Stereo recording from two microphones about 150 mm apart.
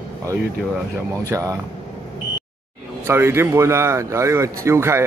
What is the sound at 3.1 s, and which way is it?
Speech, 15° right (ahead or behind).